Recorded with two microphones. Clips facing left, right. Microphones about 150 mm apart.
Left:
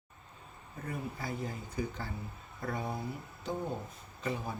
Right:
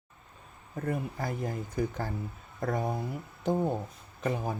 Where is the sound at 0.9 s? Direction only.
50° right (ahead or behind).